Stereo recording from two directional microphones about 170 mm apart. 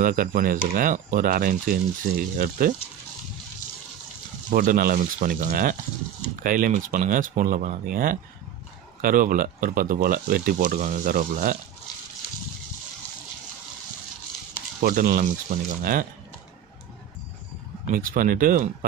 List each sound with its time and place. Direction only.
0.0 s speech: 55° right (ahead or behind)
4.5 s speech: 50° right (ahead or behind)
14.8 s speech: 55° right (ahead or behind)
17.8 s speech: 55° right (ahead or behind)